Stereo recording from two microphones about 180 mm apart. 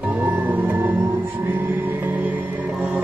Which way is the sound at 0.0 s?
10° right (ahead or behind).